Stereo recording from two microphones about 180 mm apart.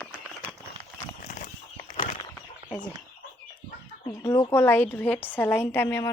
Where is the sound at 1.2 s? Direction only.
50° left (ahead or behind).